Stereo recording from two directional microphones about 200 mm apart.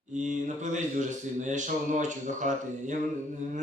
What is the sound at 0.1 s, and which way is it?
Speech, 40° right (ahead or behind).